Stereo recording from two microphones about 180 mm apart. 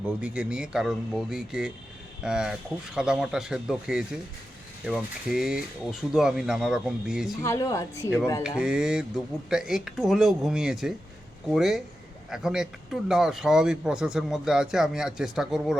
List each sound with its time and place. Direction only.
0.2 s speech: 5° right (ahead or behind)
7.4 s a woman's voice: 15° left (ahead or behind)
8.4 s speech: 5° right (ahead or behind)